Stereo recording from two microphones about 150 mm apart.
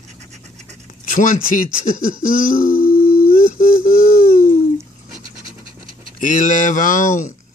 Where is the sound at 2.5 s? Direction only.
65° left (ahead or behind).